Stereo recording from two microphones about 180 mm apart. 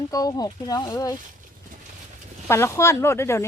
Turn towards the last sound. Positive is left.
turn(degrees=15)  # may be behind; listen again after turning